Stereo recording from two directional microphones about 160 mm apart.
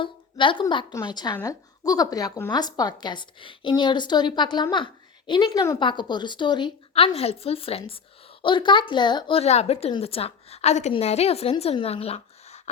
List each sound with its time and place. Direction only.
0.0 s a woman's voice: 30° left (ahead or behind)